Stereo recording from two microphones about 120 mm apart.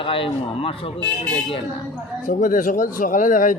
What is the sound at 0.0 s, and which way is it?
Speech, 45° left (ahead or behind).